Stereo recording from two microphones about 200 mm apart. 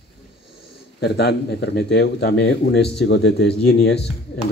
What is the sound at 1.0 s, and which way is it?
Speech, 55° left (ahead or behind).